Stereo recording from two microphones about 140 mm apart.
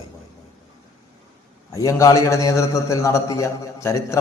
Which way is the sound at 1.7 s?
25° left (ahead or behind).